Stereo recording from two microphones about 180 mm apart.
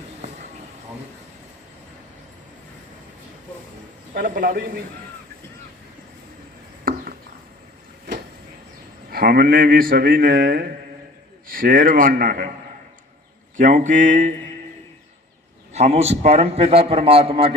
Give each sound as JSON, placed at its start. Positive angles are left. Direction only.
{"t": 4.1, "sound": "a man's voice", "side_deg": -50}
{"t": 6.9, "sound": "a sound", "side_deg": -55}
{"t": 9.0, "sound": "a man's voice", "side_deg": -55}
{"t": 13.6, "sound": "a man's voice", "side_deg": -45}
{"t": 15.7, "sound": "a man's voice", "side_deg": -35}